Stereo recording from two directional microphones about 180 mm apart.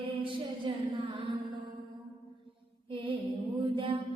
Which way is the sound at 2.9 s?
30° right (ahead or behind).